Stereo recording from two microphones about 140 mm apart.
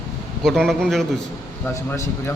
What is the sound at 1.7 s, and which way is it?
Speech, 20° left (ahead or behind).